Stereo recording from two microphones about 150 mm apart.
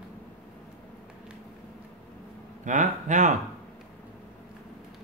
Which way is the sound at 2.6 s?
55° right (ahead or behind).